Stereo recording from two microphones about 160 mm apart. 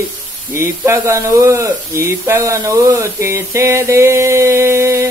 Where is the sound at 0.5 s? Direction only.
15° right (ahead or behind).